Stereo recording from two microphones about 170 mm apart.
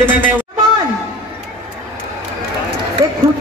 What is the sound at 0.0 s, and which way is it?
Speech, 10° right (ahead or behind).